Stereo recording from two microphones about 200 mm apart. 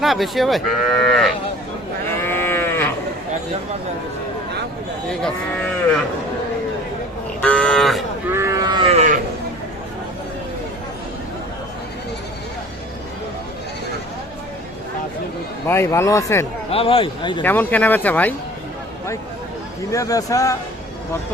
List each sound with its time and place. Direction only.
0.0 s cattle: centre (ahead or behind)
2.2 s livestock: 10° left (ahead or behind)
7.4 s cattle: 5° left (ahead or behind)
8.3 s livestock: 15° right (ahead or behind)
9.0 s livestock: 40° right (ahead or behind)
15.6 s speech: 10° left (ahead or behind)
16.6 s a man's voice: 30° left (ahead or behind)
17.4 s speech: 10° left (ahead or behind)
19.9 s speech: 15° left (ahead or behind)